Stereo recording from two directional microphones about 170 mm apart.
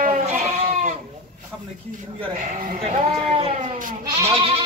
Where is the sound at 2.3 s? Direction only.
50° right (ahead or behind).